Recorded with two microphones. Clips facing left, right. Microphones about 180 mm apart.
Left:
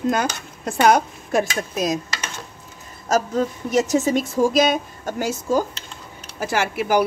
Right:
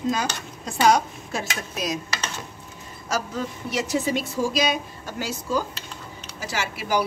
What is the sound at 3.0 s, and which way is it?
A woman's voice, 45° left (ahead or behind).